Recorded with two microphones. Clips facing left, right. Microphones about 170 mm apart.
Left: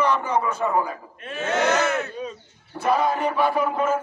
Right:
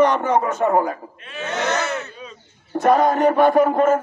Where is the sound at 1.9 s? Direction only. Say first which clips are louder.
Left 2 dB; 50° left (ahead or behind).